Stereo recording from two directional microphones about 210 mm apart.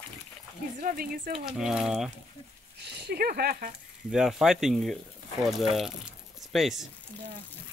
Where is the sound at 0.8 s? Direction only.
40° right (ahead or behind).